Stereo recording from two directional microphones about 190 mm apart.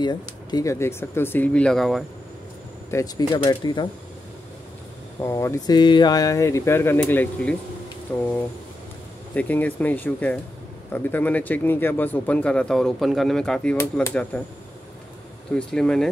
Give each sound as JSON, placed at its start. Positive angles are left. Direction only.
{"t": 0.0, "sound": "speech", "side_deg": 20}
{"t": 2.9, "sound": "speech", "side_deg": 20}
{"t": 5.2, "sound": "speech", "side_deg": 15}
{"t": 9.3, "sound": "speech", "side_deg": 10}
{"t": 15.5, "sound": "speech", "side_deg": 5}